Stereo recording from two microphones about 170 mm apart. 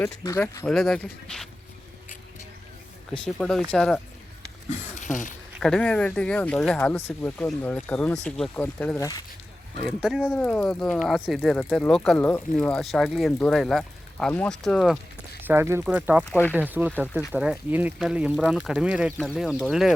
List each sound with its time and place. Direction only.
0.0 s speech: 15° left (ahead or behind)
0.7 s speech: centre (ahead or behind)
3.1 s speech: 5° left (ahead or behind)
4.9 s a sound: 50° left (ahead or behind)
5.5 s speech: 5° left (ahead or behind)
9.0 s speech: 20° left (ahead or behind)
10.0 s speech: 5° right (ahead or behind)
10.3 s speech: 10° left (ahead or behind)
15.4 s speech: 15° right (ahead or behind)
16.3 s speech: 10° left (ahead or behind)
16.6 s speech: 10° right (ahead or behind)